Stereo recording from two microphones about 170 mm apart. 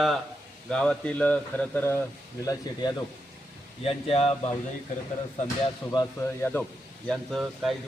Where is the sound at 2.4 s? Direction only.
25° left (ahead or behind).